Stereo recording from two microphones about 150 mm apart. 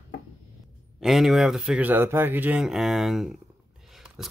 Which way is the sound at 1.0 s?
Centre (ahead or behind).